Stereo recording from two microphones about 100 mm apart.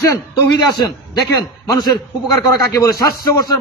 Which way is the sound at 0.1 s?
35° left (ahead or behind).